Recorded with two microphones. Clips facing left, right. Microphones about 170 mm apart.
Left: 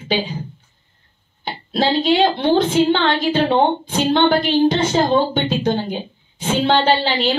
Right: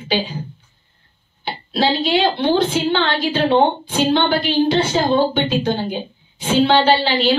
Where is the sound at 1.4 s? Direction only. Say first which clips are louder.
Even; 45° left (ahead or behind).